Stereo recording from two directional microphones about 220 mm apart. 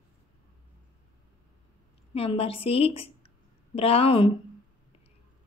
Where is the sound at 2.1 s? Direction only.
25° left (ahead or behind).